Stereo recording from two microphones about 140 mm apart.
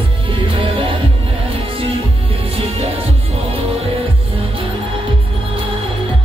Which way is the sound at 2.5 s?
45° right (ahead or behind).